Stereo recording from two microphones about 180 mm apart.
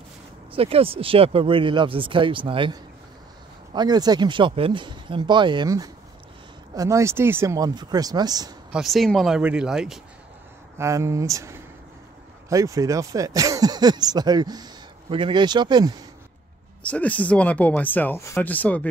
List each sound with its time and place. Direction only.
0.5 s speech: 30° right (ahead or behind)
8.7 s speech: centre (ahead or behind)
10.8 s speech: 15° right (ahead or behind)
16.8 s speech: 10° left (ahead or behind)